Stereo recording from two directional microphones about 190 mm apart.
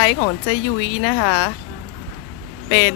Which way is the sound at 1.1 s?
40° left (ahead or behind).